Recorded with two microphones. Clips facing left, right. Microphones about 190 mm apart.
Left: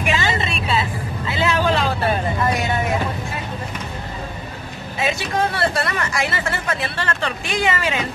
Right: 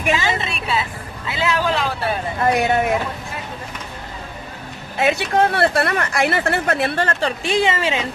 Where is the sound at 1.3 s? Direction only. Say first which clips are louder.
Left 1 dB; 5° right (ahead or behind).